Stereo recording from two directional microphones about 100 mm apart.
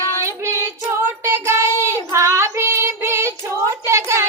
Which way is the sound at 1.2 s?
25° right (ahead or behind).